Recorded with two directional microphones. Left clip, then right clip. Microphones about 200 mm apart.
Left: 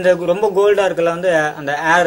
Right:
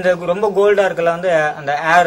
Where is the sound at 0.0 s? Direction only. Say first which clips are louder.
Left 1 dB; 30° left (ahead or behind).